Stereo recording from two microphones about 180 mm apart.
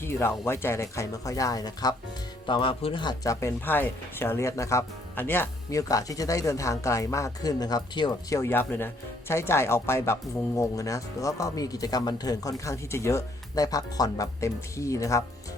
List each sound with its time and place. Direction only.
0.0 s speech: 15° left (ahead or behind)